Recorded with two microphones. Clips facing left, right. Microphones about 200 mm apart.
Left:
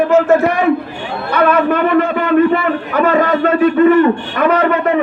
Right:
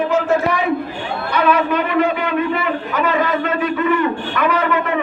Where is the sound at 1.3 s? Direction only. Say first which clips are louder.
Left 4 dB; 50° left (ahead or behind).